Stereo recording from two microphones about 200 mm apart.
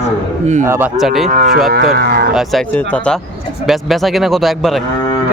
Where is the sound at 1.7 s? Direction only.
50° right (ahead or behind).